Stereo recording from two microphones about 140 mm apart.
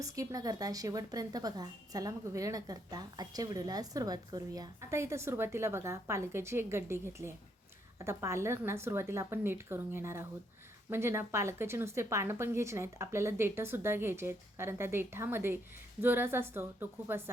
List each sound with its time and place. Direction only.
0.0 s a woman's voice: 25° right (ahead or behind)